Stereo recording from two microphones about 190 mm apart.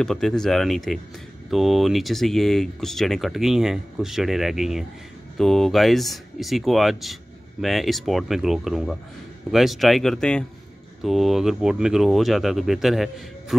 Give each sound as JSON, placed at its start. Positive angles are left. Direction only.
{"t": 0.0, "sound": "speech", "side_deg": 5}